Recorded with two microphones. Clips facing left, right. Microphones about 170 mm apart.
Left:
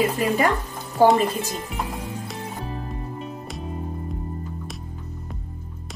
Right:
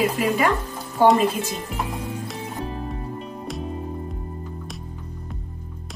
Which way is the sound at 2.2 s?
Centre (ahead or behind).